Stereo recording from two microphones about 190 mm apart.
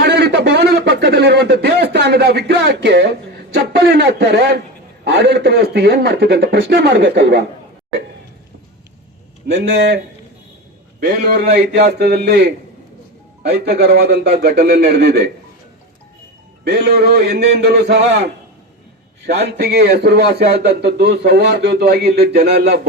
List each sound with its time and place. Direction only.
0.0 s a sound: 60° right (ahead or behind)
5.0 s a man's voice: 60° right (ahead or behind)
9.5 s a man's voice: 60° right (ahead or behind)
11.0 s a man's voice: 60° right (ahead or behind)
16.6 s a man's voice: 60° right (ahead or behind)